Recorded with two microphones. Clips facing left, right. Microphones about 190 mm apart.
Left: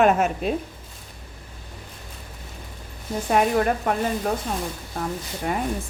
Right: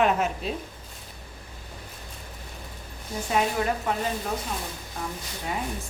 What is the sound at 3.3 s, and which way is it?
Speech, 55° left (ahead or behind).